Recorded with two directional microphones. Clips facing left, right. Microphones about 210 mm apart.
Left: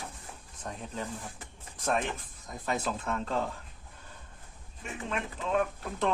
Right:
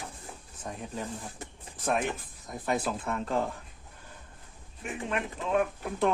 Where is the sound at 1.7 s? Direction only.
5° right (ahead or behind).